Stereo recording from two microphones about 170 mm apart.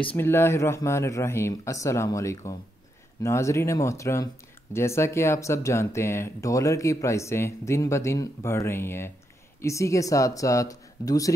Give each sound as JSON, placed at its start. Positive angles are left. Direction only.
{"t": 0.0, "sound": "speech", "side_deg": 10}